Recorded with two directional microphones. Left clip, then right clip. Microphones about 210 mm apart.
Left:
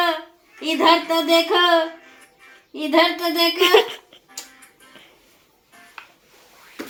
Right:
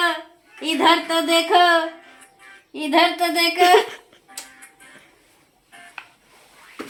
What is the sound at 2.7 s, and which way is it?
A woman's voice, 10° right (ahead or behind).